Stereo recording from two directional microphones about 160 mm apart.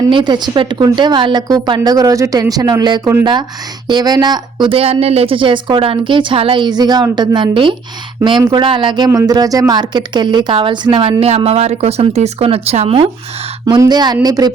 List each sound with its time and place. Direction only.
0.0 s a woman's voice: 30° right (ahead or behind)
13.7 s a woman's voice: 25° right (ahead or behind)